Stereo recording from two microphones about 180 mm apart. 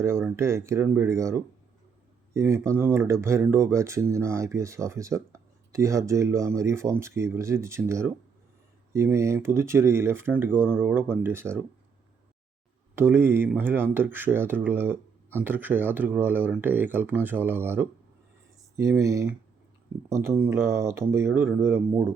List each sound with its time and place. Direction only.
0.0 s speech: 15° right (ahead or behind)
13.0 s speech: 10° right (ahead or behind)